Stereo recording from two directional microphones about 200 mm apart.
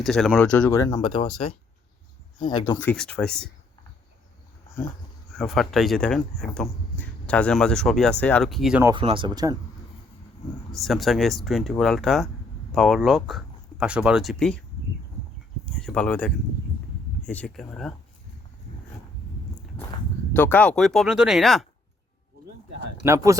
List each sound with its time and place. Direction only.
0.0 s speech: centre (ahead or behind); by 1.3 s 25° left (ahead or behind)
2.4 s speech: 20° left (ahead or behind)
2.7 s speech: 5° left (ahead or behind)
5.4 s speech: centre (ahead or behind)
8.8 s speech: 15° right (ahead or behind)
10.7 s speech: centre (ahead or behind)
15.7 s speech: 5° left (ahead or behind)
20.3 s speech: 10° left (ahead or behind)
23.0 s speech: 15° right (ahead or behind)